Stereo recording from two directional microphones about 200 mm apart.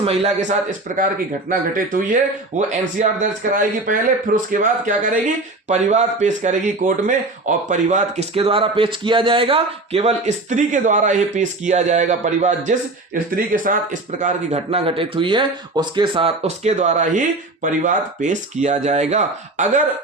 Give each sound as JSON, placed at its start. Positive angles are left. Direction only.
{"t": 0.0, "sound": "speech", "side_deg": -30}